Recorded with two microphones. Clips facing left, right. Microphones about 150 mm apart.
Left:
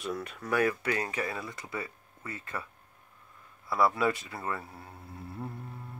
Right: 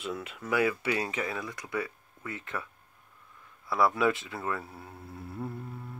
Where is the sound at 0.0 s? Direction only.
5° right (ahead or behind).